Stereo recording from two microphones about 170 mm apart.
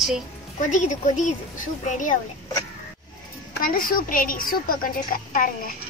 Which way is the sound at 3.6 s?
55° left (ahead or behind).